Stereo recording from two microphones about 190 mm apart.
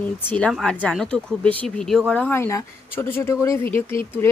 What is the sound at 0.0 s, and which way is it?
Speech, 10° left (ahead or behind).